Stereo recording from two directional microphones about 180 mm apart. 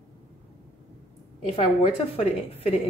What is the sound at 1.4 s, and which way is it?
A woman's voice, 35° left (ahead or behind).